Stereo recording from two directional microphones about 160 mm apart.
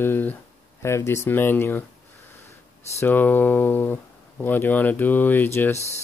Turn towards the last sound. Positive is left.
turn(degrees=15)  # may be behind; listen again after turning